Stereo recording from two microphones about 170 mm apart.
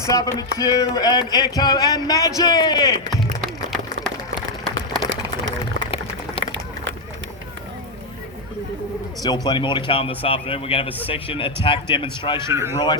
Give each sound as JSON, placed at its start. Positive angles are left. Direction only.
{"t": 0.0, "sound": "speech", "side_deg": 20}
{"t": 5.0, "sound": "a sound", "side_deg": -90}
{"t": 9.2, "sound": "speech", "side_deg": 25}
{"t": 12.5, "sound": "speech", "side_deg": -15}
{"t": 12.7, "sound": "speech", "side_deg": 25}